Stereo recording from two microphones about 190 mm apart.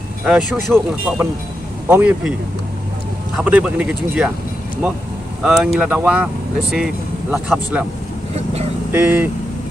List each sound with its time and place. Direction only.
0.2 s speech: 5° right (ahead or behind)
3.3 s speech: 5° right (ahead or behind)
5.4 s speech: 5° right (ahead or behind)
8.9 s speech: 10° right (ahead or behind)